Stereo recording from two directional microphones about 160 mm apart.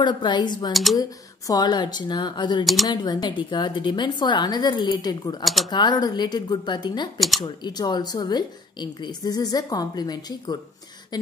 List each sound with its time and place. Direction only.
0.0 s speech: 30° left (ahead or behind)
2.6 s speech: centre (ahead or behind)
2.9 s speech: 25° left (ahead or behind)
5.4 s speech: centre (ahead or behind)
5.7 s speech: 25° left (ahead or behind)
7.2 s speech: centre (ahead or behind)
7.4 s speech: 25° left (ahead or behind)